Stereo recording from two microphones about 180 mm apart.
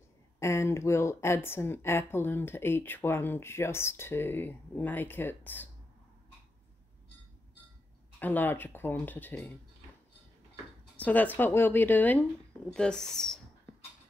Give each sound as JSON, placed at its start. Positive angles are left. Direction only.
{"t": 0.4, "sound": "speech", "side_deg": 15}
{"t": 8.2, "sound": "speech", "side_deg": 10}
{"t": 11.0, "sound": "speech", "side_deg": 10}